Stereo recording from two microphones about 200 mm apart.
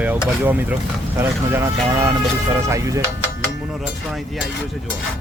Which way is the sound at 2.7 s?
15° right (ahead or behind).